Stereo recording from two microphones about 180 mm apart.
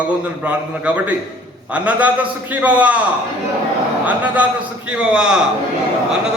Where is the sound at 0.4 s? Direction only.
10° right (ahead or behind).